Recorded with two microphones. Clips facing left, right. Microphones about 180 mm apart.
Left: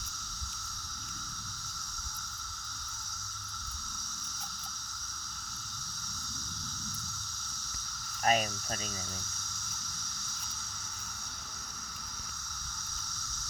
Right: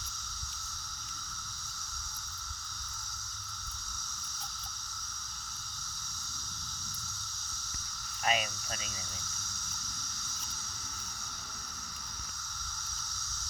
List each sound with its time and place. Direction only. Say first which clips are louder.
8.2 s speech: left 4 dB; 40° left (ahead or behind)